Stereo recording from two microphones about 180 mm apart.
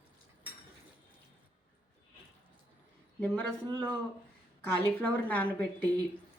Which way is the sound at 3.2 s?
10° left (ahead or behind).